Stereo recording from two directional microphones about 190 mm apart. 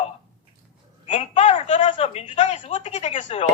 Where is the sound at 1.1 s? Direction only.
35° left (ahead or behind).